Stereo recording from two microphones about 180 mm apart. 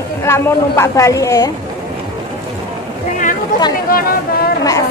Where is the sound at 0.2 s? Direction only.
15° left (ahead or behind).